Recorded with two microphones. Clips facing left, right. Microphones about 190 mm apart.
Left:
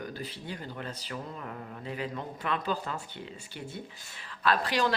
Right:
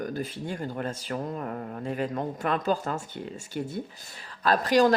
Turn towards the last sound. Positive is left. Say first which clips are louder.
# right 6 dB
turn(degrees=-45)  # may be behind; listen again after turning